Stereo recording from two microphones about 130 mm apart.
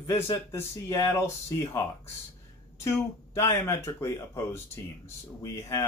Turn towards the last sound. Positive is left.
turn(degrees=25)  # may be behind; listen again after turning